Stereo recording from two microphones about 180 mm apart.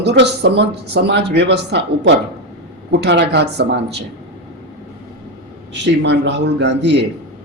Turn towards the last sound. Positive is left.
turn(degrees=-80)